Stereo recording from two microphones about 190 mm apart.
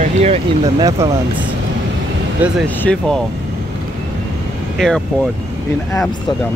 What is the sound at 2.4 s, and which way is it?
Speech, 10° right (ahead or behind).